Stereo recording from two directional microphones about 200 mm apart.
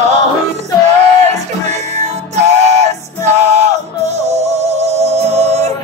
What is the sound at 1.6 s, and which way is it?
Music, 35° right (ahead or behind).